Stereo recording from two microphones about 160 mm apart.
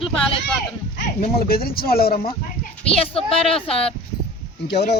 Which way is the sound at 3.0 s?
35° left (ahead or behind).